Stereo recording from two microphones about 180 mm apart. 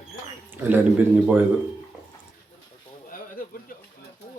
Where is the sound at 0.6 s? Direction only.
10° right (ahead or behind).